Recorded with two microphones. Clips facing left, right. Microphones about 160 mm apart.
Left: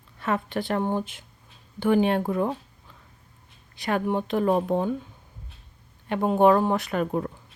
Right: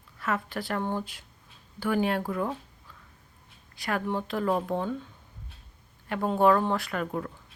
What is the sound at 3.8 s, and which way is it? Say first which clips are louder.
Speech: left 5 dB; 25° left (ahead or behind).